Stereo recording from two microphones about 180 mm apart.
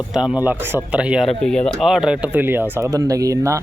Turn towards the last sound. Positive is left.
turn(degrees=-15)  # may be behind; listen again after turning